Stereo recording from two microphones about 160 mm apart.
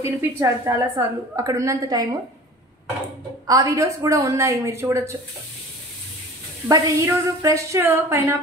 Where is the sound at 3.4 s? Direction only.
20° right (ahead or behind).